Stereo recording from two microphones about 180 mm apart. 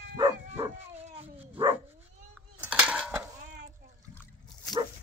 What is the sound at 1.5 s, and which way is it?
Dog, 25° right (ahead or behind).